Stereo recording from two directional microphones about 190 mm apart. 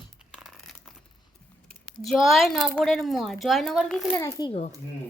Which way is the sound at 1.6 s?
Centre (ahead or behind).